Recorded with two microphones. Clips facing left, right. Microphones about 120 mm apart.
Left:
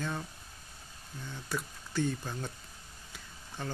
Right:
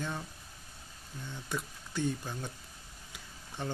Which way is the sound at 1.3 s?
15° right (ahead or behind).